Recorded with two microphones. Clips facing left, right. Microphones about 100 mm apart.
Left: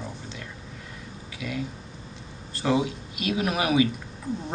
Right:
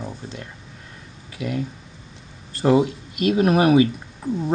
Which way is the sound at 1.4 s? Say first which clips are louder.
Right 6 dB; 40° right (ahead or behind).